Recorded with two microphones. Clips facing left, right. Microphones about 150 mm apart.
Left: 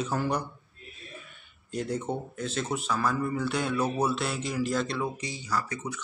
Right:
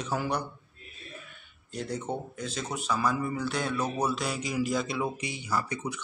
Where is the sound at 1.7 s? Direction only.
5° left (ahead or behind).